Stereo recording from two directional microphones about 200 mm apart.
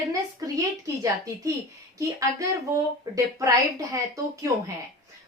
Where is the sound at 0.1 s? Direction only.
15° right (ahead or behind).